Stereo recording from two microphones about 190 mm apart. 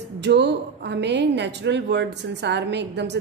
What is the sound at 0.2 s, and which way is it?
A woman's voice, 65° right (ahead or behind).